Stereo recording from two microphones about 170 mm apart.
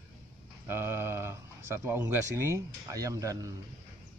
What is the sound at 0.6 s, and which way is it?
Speech, 15° right (ahead or behind).